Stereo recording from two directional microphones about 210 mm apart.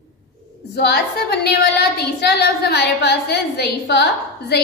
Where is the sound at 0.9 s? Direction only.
50° left (ahead or behind).